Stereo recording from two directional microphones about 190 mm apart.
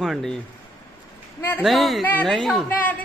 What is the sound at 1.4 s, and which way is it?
Speech, 10° left (ahead or behind).